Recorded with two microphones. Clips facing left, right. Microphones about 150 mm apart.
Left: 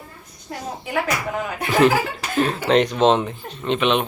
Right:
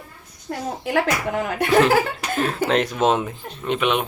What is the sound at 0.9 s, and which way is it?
Speech, 70° right (ahead or behind).